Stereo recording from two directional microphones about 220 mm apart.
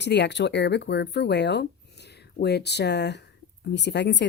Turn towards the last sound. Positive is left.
turn(degrees=50)  # may be behind; listen again after turning